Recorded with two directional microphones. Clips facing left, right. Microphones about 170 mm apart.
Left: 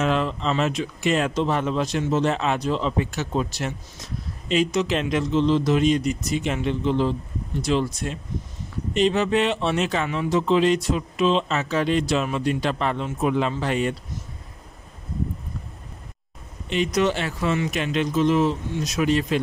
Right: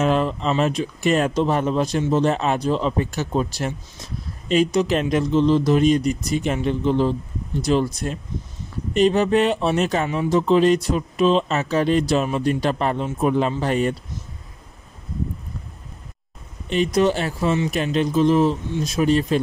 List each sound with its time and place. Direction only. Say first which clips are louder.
0.0 s speech: right 3 dB; 40° right (ahead or behind)
16.6 s speech: right 3 dB; 40° right (ahead or behind)